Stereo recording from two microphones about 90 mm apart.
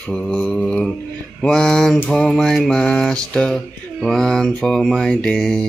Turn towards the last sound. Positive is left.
turn(degrees=5)  # may be behind; listen again after turning